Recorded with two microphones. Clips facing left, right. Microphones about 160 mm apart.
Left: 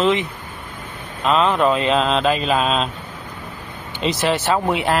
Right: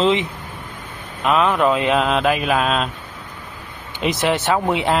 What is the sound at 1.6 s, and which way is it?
Speech, 10° right (ahead or behind).